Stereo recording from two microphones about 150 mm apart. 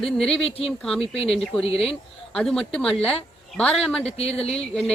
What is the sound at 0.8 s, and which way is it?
A woman's voice, 5° left (ahead or behind).